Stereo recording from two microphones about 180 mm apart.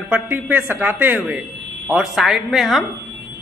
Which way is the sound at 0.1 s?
10° right (ahead or behind).